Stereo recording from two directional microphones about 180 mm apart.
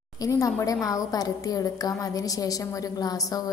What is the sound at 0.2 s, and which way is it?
A woman's voice, 20° left (ahead or behind).